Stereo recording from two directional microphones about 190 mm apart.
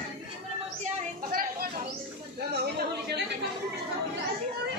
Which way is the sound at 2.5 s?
60° right (ahead or behind).